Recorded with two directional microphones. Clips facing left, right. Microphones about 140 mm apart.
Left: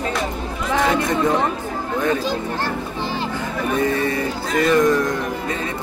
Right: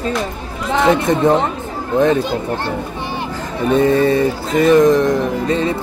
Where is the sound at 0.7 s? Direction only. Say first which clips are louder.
Right 5 dB; 25° right (ahead or behind).